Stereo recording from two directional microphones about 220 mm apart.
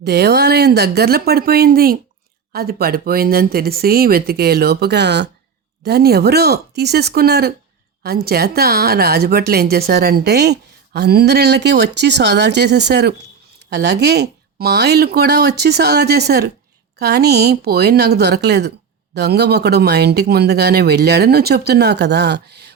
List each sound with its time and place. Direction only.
0.0 s a woman's voice: 45° right (ahead or behind)